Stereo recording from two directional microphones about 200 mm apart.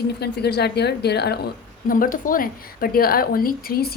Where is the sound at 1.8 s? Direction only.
45° left (ahead or behind).